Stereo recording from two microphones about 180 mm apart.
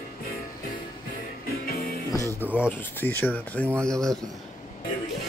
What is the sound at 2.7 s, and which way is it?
Speech, 10° left (ahead or behind).